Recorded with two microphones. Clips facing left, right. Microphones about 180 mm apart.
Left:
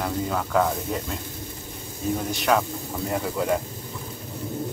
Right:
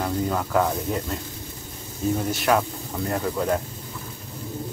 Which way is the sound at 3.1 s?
5° left (ahead or behind).